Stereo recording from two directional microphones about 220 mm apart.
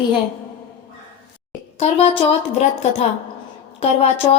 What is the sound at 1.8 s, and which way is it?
A woman's voice, 30° left (ahead or behind).